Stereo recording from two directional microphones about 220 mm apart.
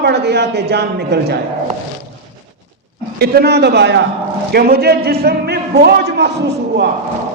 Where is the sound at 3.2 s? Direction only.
45° right (ahead or behind).